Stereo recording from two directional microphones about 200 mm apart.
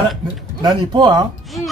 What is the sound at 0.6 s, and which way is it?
Speech, 20° right (ahead or behind).